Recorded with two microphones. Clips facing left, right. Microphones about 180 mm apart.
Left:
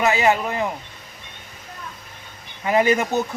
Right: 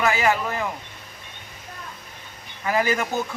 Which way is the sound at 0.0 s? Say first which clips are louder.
Left 3 dB; 20° left (ahead or behind).